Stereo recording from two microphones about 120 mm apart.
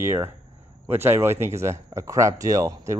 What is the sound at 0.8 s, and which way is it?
Speech, 20° right (ahead or behind).